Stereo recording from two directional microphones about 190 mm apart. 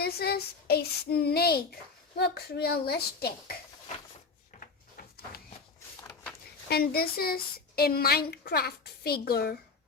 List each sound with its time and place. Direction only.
0.0 s a woman's voice: 55° left (ahead or behind)
6.0 s a sound: 15° left (ahead or behind)
6.7 s a woman's voice: 55° left (ahead or behind)